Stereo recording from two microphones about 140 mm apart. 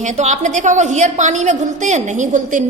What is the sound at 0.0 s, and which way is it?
A woman's voice, 60° right (ahead or behind).